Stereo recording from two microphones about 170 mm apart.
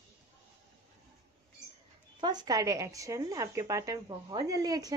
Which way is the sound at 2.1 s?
25° right (ahead or behind).